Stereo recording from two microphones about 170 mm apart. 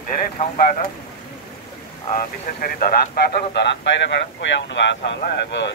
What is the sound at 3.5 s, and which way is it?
Speech, 90° left.